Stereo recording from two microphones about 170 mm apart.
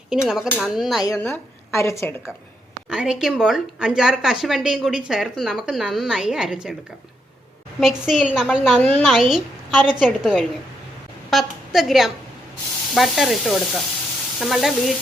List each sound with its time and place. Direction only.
0.1 s a woman's voice: 5° right (ahead or behind)
1.0 s a woman's voice: 15° left (ahead or behind)
2.9 s a woman's voice: 5° right (ahead or behind)
7.8 s a woman's voice: centre (ahead or behind)
8.8 s a woman's voice: 10° left (ahead or behind)
9.1 s a woman's voice: centre (ahead or behind)